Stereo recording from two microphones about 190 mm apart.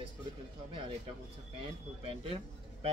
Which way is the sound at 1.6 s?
30° right (ahead or behind).